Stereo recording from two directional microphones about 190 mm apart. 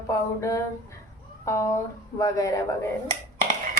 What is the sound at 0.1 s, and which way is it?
Speech, 15° left (ahead or behind).